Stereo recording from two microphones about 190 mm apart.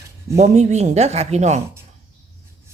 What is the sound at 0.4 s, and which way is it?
Speech, 35° right (ahead or behind).